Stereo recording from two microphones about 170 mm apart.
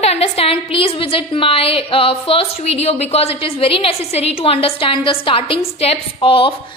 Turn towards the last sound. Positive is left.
turn(degrees=30)  # may be behind; listen again after turning